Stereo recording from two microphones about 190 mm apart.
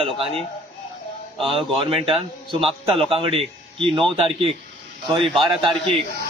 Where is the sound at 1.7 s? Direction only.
30° right (ahead or behind).